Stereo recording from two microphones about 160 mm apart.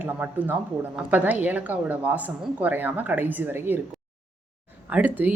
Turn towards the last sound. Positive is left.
turn(degrees=-10)  # may be behind; listen again after turning